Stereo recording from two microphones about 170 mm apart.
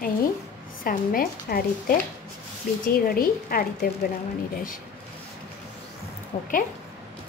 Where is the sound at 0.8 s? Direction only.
55° left (ahead or behind).